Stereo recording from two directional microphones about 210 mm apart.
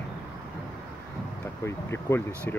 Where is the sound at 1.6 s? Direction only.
10° left (ahead or behind).